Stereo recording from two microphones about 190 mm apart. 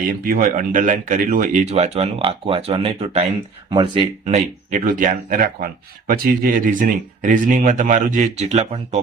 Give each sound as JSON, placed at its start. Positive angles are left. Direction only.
{"t": 0.3, "sound": "speech", "side_deg": -45}
{"t": 1.7, "sound": "speech", "side_deg": -35}
{"t": 4.3, "sound": "speech", "side_deg": -40}